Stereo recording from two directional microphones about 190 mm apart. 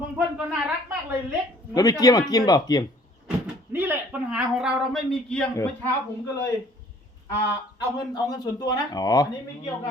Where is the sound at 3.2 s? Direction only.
5° right (ahead or behind).